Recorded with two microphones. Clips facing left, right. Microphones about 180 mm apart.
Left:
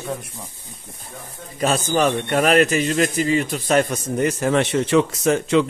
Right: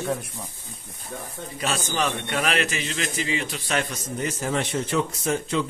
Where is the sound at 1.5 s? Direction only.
45° left (ahead or behind).